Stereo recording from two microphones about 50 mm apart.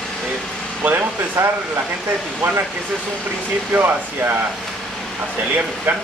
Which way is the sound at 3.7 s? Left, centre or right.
Right.